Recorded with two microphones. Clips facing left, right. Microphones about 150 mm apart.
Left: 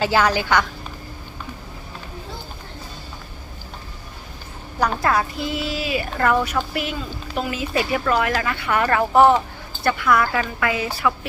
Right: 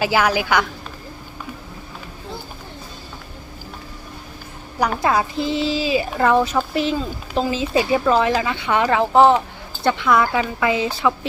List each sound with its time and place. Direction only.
0.0 s a woman's voice: 10° right (ahead or behind)
5.0 s speech: 25° right (ahead or behind)